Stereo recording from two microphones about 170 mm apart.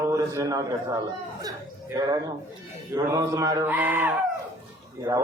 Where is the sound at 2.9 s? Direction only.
20° right (ahead or behind).